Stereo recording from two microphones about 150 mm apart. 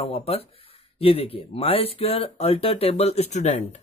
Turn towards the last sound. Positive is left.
turn(degrees=50)  # may be behind; listen again after turning